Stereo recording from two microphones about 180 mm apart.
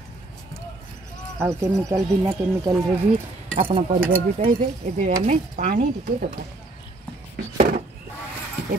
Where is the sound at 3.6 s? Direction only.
30° right (ahead or behind).